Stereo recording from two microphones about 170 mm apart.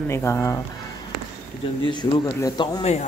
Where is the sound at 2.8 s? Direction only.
40° left (ahead or behind).